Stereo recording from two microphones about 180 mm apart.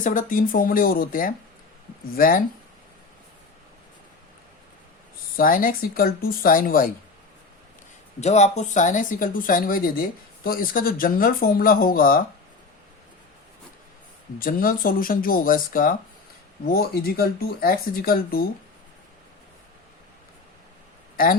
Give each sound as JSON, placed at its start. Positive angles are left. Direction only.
{"t": 0.0, "sound": "speech", "side_deg": 45}
{"t": 5.4, "sound": "speech", "side_deg": 50}
{"t": 8.2, "sound": "speech", "side_deg": 40}
{"t": 14.3, "sound": "speech", "side_deg": 50}